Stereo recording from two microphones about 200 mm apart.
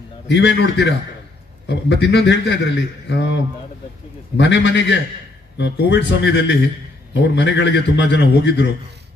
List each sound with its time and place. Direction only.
0.3 s a man's voice: 60° left (ahead or behind)
4.4 s a man's voice: 65° left (ahead or behind)